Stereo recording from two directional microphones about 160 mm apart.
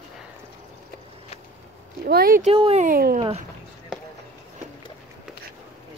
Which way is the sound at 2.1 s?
65° right (ahead or behind).